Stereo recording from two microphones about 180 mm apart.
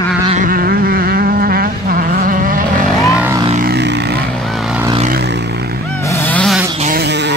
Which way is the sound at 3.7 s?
70° right (ahead or behind).